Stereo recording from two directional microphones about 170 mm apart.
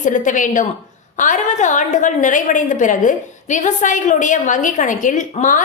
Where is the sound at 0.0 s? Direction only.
50° left (ahead or behind).